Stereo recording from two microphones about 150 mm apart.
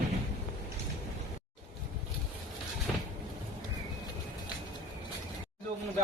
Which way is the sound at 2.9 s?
Centre (ahead or behind).